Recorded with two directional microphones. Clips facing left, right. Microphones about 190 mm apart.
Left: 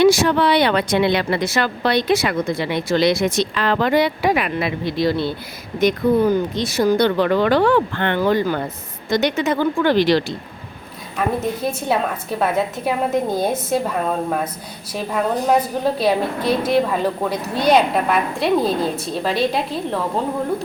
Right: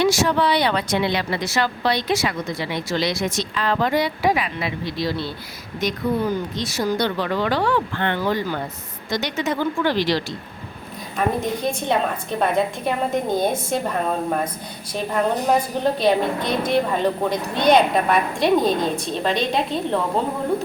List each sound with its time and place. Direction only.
0.0 s a woman's voice: 60° left (ahead or behind)
11.3 s a woman's voice: 5° left (ahead or behind)